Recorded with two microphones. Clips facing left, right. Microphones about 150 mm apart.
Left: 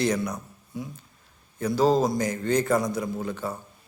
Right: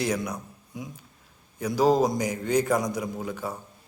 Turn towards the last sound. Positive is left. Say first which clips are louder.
# left 2 dB
turn(degrees=-10)  # may be behind; listen again after turning